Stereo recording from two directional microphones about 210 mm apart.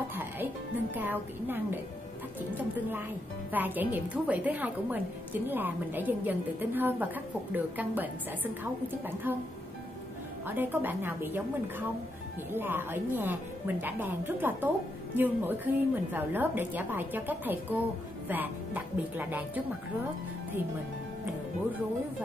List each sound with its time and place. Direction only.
0.1 s music: 10° right (ahead or behind)
0.9 s a woman's voice: 10° right (ahead or behind)
3.5 s a woman's voice: 10° right (ahead or behind)
10.4 s a woman's voice: 10° right (ahead or behind)
12.5 s a woman's voice: 10° right (ahead or behind)